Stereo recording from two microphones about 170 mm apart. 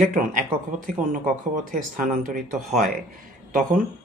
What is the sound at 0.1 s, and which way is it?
Speech, 50° right (ahead or behind).